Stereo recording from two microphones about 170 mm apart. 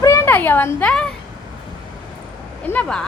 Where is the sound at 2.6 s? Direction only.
5° left (ahead or behind).